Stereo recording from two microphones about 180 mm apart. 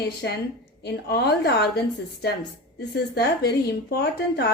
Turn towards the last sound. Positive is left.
turn(degrees=65)  # may be behind; listen again after turning